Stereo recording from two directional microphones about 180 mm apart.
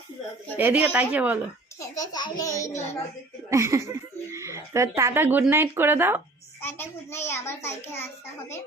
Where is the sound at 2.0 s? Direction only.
20° left (ahead or behind).